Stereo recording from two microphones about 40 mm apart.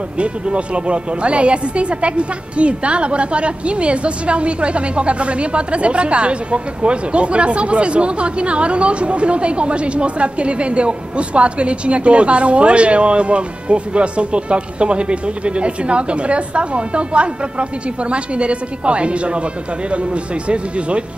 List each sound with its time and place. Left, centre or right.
0.2 s speech: right